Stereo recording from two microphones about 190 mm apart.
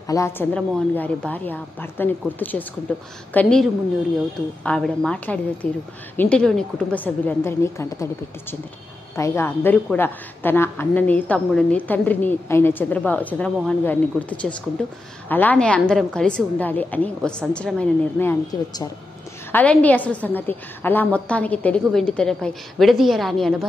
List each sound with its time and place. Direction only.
0.0 s a woman's voice: 15° left (ahead or behind)
4.6 s a woman's voice: 5° left (ahead or behind); by 18.9 s 20° left (ahead or behind)
19.5 s a woman's voice: 5° left (ahead or behind)